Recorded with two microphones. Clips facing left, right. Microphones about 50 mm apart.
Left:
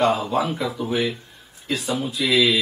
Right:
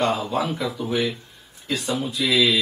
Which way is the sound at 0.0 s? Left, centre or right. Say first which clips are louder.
Left 2 dB; centre.